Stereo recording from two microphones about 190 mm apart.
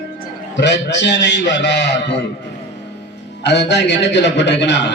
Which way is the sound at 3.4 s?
65° left (ahead or behind).